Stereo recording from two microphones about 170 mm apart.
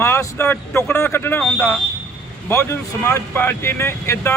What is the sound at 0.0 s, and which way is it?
Speech, 15° left (ahead or behind).